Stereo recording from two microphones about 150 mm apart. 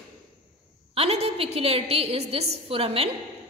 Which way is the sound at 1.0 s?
45° right (ahead or behind).